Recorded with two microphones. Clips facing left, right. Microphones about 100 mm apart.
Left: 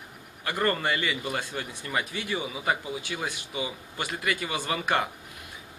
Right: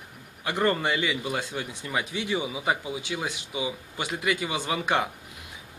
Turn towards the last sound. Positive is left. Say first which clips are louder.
# right 1 dB
turn(degrees=-10)  # may be behind; listen again after turning